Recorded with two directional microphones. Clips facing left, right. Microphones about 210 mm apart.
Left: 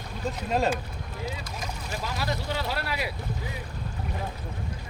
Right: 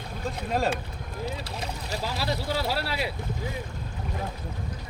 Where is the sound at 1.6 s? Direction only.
30° right (ahead or behind).